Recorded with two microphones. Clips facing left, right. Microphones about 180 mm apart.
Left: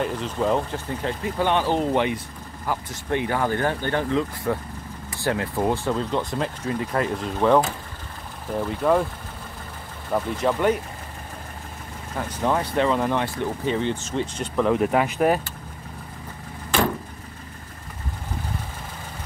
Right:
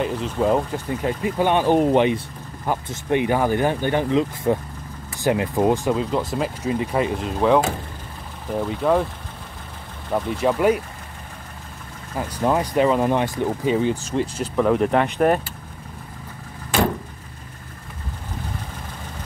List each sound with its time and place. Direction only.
0.0 s speech: 5° right (ahead or behind)
5.9 s speech: 5° right (ahead or behind)
10.1 s speech: 5° right (ahead or behind)
12.3 s speech: 10° right (ahead or behind)